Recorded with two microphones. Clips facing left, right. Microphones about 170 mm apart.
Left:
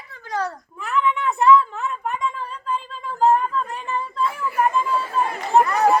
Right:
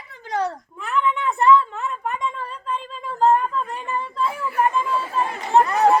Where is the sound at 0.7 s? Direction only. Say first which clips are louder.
Left 1 dB; centre (ahead or behind).